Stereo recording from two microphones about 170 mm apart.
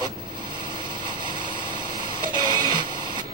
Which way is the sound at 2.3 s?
25° right (ahead or behind).